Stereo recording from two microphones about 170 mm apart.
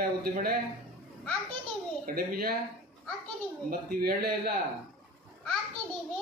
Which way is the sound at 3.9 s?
60° right (ahead or behind).